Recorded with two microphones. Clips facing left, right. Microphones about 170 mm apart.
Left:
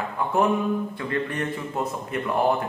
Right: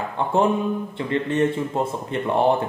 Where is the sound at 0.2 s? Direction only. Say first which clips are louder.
Right 2 dB; 25° right (ahead or behind).